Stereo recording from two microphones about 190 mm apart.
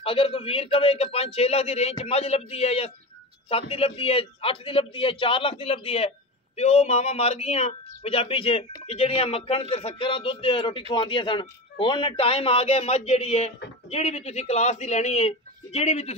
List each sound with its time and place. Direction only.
0.0 s a man's voice: 30° left (ahead or behind)